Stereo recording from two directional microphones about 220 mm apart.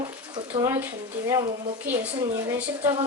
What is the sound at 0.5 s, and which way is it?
Speech, 20° right (ahead or behind).